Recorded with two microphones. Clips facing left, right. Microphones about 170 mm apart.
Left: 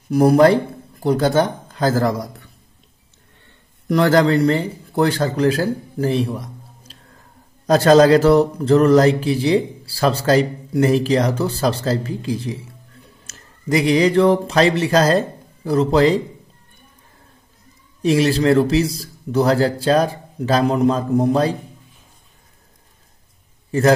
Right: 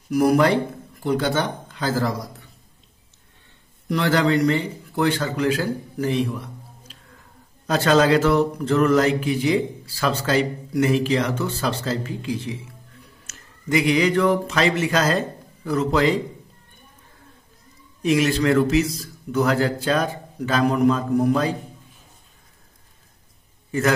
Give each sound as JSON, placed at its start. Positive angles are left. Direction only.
{"t": 0.1, "sound": "speech", "side_deg": 30}
{"t": 3.9, "sound": "speech", "side_deg": 45}
{"t": 18.0, "sound": "a man's voice", "side_deg": 35}